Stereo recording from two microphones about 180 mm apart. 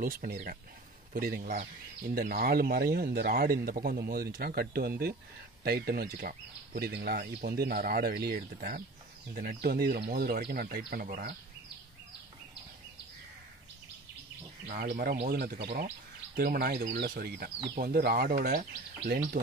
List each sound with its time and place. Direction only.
0.0 s speech: 50° right (ahead or behind)
14.7 s speech: 55° right (ahead or behind)